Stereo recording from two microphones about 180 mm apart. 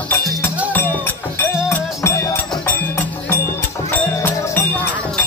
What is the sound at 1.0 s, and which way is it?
Music, 10° left (ahead or behind).